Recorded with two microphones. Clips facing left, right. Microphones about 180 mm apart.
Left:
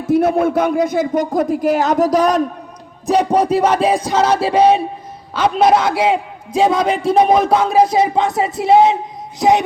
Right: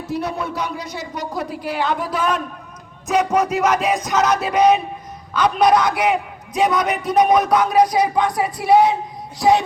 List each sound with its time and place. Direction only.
0.0 s speech: 50° left (ahead or behind)
3.1 s music: 35° left (ahead or behind)
5.3 s a man's voice: 25° left (ahead or behind)